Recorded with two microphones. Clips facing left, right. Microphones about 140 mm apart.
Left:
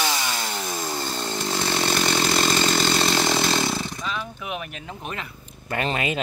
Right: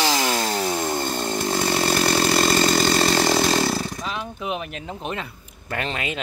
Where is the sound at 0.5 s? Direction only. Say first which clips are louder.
Right 6 dB; 70° right (ahead or behind).